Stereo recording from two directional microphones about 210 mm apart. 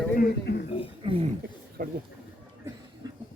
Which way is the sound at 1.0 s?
25° right (ahead or behind).